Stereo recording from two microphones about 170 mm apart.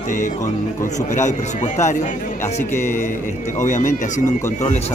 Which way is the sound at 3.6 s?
45° left (ahead or behind).